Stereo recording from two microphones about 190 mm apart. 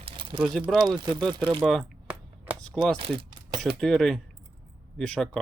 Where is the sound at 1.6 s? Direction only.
Centre (ahead or behind).